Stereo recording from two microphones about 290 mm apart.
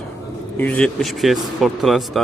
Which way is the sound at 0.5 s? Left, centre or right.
Centre.